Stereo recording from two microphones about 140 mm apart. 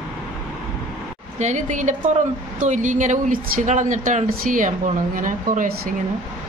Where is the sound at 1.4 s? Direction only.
60° right (ahead or behind).